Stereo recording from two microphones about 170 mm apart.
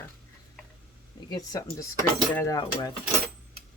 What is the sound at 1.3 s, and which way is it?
Speech, 20° left (ahead or behind).